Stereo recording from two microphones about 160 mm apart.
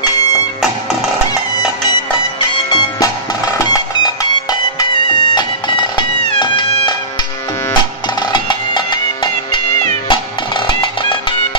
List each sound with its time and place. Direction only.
2.7 s music: 25° left (ahead or behind)
8.2 s music: 30° left (ahead or behind)